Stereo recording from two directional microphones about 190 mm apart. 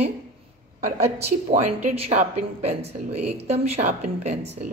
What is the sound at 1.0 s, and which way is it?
Speech, 35° right (ahead or behind).